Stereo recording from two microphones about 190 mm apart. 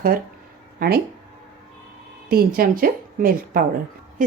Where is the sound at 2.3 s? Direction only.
50° right (ahead or behind).